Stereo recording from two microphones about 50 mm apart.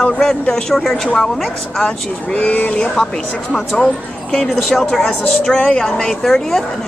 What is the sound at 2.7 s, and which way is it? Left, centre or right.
Speech, centre.